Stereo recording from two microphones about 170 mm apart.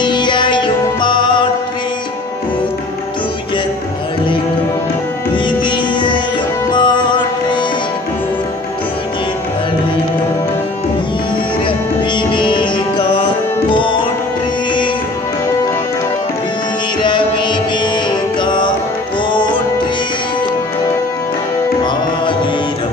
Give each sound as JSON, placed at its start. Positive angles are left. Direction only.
{"t": 0.0, "sound": "music", "side_deg": 25}
{"t": 5.3, "sound": "music", "side_deg": 30}
{"t": 12.2, "sound": "music", "side_deg": 30}
{"t": 17.0, "sound": "music", "side_deg": 30}